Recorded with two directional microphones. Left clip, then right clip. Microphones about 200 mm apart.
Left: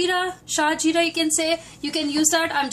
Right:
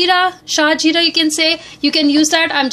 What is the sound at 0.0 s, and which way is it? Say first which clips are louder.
A woman's voice: right 10 dB; 45° right (ahead or behind).